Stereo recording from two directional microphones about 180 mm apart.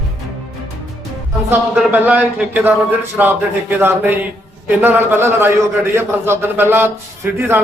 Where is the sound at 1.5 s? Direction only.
10° right (ahead or behind).